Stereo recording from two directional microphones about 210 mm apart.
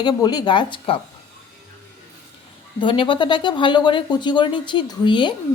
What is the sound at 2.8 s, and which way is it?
Speech, 25° left (ahead or behind).